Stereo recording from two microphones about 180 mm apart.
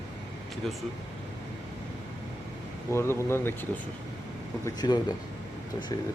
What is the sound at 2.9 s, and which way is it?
Speech, 15° left (ahead or behind).